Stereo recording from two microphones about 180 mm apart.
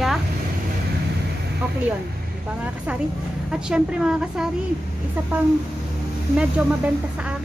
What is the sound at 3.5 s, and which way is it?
Speech, 5° right (ahead or behind).